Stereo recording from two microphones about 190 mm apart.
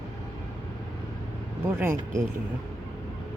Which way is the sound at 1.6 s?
15° right (ahead or behind).